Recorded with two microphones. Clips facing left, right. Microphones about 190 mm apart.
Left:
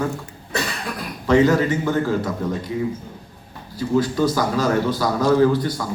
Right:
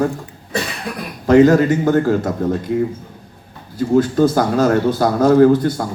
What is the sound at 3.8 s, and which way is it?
A man's voice, 50° right (ahead or behind).